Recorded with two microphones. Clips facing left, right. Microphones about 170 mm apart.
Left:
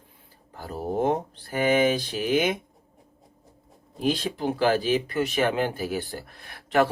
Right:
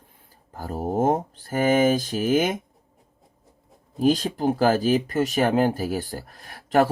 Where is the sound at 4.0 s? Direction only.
40° right (ahead or behind).